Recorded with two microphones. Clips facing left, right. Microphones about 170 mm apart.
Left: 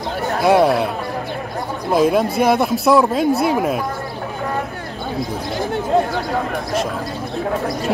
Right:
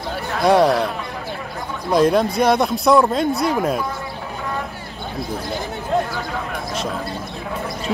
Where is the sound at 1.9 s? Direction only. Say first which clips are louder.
Even; 5° left (ahead or behind).